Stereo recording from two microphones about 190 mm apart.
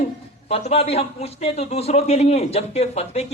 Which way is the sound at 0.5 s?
35° left (ahead or behind).